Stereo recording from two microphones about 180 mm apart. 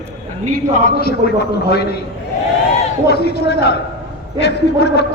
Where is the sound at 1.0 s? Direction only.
60° left (ahead or behind).